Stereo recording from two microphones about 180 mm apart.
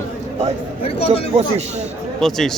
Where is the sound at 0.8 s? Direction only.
30° left (ahead or behind).